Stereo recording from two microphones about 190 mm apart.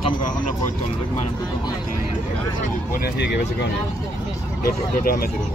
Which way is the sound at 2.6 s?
60° left (ahead or behind).